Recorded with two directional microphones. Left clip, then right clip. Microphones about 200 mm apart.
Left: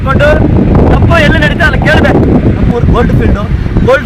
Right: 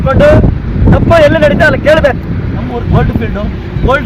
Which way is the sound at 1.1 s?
35° right (ahead or behind).